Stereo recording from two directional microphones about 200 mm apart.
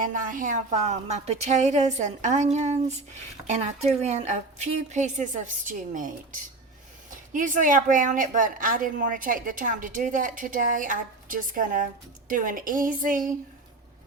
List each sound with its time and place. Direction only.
0.0 s a woman's voice: 40° right (ahead or behind)